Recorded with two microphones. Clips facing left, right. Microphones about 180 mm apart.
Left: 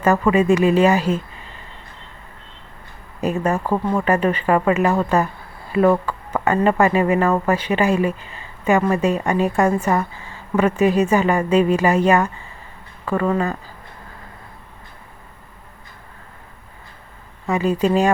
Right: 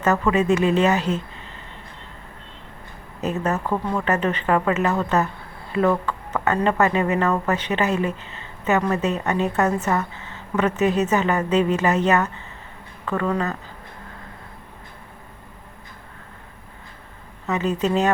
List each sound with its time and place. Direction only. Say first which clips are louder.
0.0 s speech: left 3 dB; 10° left (ahead or behind)
3.2 s speech: left 3 dB; 10° left (ahead or behind)
13.3 s speech: left 3 dB; 10° left (ahead or behind)
17.4 s speech: left 4 dB; 10° left (ahead or behind)